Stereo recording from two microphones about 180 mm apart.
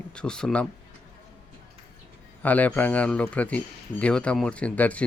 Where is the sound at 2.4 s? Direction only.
10° left (ahead or behind).